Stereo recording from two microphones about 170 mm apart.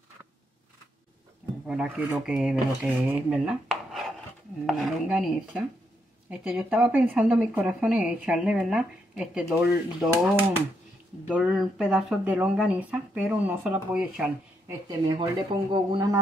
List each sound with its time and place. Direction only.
1.7 s speech: 5° right (ahead or behind)
14.9 s speech: 25° right (ahead or behind)